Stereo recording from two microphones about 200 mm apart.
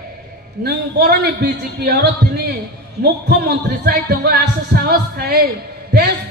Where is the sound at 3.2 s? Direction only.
55° right (ahead or behind).